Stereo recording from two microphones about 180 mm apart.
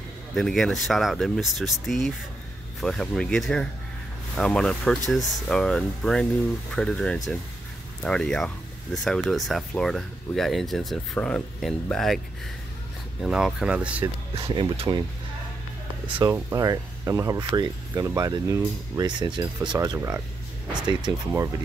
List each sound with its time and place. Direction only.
0.3 s speech: 5° left (ahead or behind)
13.2 s speech: 5° right (ahead or behind)
14.5 s speech: 25° right (ahead or behind)
16.2 s speech: 10° right (ahead or behind)